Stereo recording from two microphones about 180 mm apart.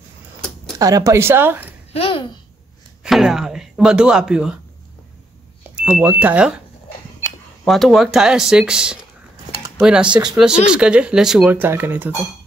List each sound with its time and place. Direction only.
0.7 s speech: 20° right (ahead or behind)
2.0 s a child's voice: 30° left (ahead or behind)
3.0 s speech: centre (ahead or behind)
5.9 s speech: 10° right (ahead or behind)
7.6 s speech: centre (ahead or behind)